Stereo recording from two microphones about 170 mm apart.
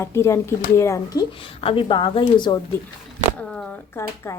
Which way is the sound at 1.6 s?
30° left (ahead or behind).